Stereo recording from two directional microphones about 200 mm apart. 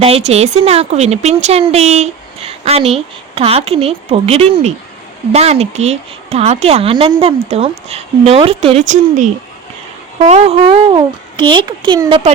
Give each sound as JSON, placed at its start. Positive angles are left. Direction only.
{"t": 0.0, "sound": "a woman's voice", "side_deg": -30}